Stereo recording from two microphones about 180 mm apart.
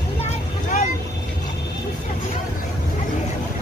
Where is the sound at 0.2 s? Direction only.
40° left (ahead or behind).